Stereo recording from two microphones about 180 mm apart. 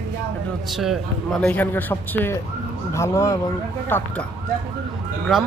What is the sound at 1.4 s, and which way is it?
A man's voice, 10° left (ahead or behind).